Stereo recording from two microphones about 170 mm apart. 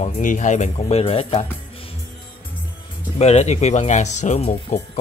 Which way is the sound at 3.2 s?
40° left (ahead or behind).